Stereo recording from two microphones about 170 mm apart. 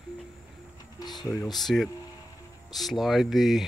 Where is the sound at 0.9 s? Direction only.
25° left (ahead or behind).